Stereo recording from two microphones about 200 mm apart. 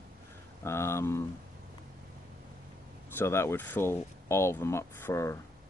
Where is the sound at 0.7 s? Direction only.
15° left (ahead or behind).